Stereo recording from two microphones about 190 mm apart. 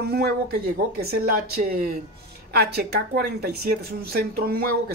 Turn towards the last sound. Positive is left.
turn(degrees=-55)  # may be behind; listen again after turning